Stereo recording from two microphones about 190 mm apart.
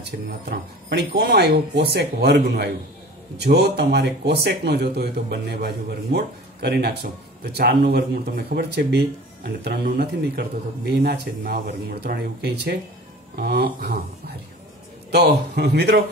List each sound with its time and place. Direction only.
0.0 s speech: 60° right (ahead or behind)